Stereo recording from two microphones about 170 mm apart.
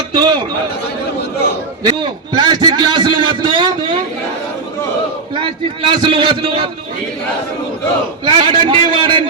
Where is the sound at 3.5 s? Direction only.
25° right (ahead or behind).